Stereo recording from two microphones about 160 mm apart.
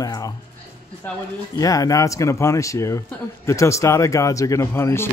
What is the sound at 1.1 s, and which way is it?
Speech, 10° left (ahead or behind).